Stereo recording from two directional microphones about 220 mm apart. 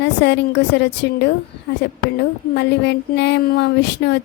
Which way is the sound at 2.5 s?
50° left (ahead or behind).